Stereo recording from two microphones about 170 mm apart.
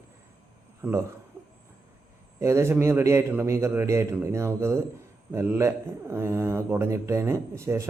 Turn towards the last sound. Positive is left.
turn(degrees=-15)  # may be behind; listen again after turning